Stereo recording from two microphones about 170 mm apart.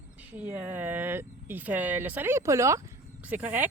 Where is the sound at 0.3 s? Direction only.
10° right (ahead or behind).